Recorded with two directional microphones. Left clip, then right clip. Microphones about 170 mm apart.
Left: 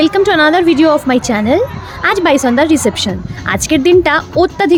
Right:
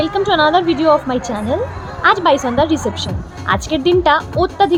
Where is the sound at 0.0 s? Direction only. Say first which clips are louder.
Left 4 dB; 50° left (ahead or behind).